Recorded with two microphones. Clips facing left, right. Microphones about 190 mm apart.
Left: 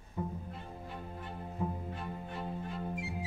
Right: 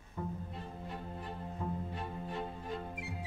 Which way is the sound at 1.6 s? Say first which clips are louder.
Left 3 dB; 10° left (ahead or behind).